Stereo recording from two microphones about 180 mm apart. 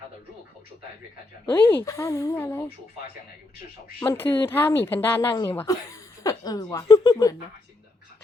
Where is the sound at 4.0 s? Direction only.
10° left (ahead or behind).